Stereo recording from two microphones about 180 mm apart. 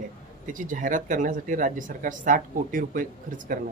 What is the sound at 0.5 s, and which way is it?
Speech, 45° right (ahead or behind).